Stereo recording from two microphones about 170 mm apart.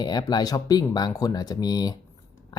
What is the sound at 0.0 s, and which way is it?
Speech, 25° left (ahead or behind).